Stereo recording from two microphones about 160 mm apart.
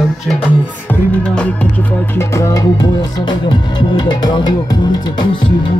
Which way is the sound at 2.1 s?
20° left (ahead or behind).